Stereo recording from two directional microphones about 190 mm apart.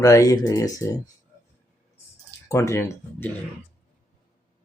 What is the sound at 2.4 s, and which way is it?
Speech, 15° left (ahead or behind).